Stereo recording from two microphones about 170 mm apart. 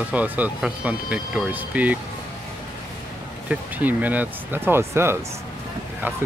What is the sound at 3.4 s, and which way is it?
Speech, 10° right (ahead or behind).